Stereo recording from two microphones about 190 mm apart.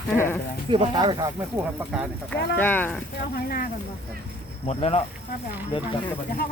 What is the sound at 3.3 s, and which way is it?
Speech, 50° left (ahead or behind).